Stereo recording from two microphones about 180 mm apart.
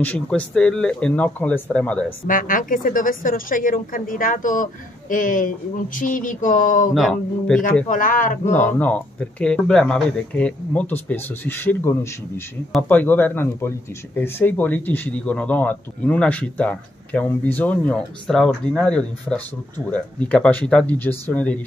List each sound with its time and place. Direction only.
0.0 s speech: 10° left (ahead or behind)
2.2 s speech: 50° left (ahead or behind)
6.9 s a sound: centre (ahead or behind)
7.9 s speech: 50° left (ahead or behind)
8.5 s speech: 10° left (ahead or behind)